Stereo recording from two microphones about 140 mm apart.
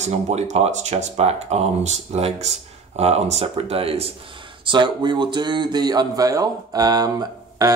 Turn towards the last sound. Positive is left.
turn(degrees=-25)  # may be behind; listen again after turning